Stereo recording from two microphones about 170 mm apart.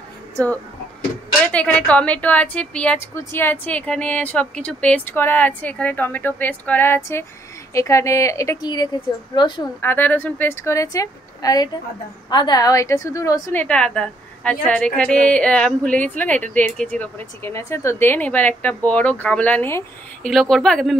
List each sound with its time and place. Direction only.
1.4 s a woman's voice: 10° left (ahead or behind); by 9.7 s 25° left (ahead or behind)
9.8 s a woman's voice: 10° left (ahead or behind)